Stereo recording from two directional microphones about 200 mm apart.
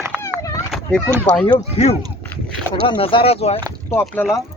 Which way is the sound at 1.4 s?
30° left (ahead or behind).